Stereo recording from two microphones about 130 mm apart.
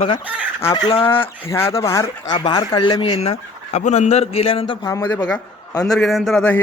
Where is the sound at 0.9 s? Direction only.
40° left (ahead or behind).